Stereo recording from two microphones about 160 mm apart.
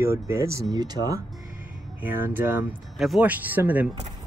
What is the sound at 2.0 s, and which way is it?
Speech, 10° right (ahead or behind).